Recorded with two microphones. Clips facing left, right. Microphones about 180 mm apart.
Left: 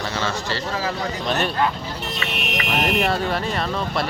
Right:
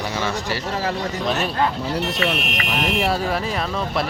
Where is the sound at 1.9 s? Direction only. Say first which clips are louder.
Right 7 dB; 70° right (ahead or behind).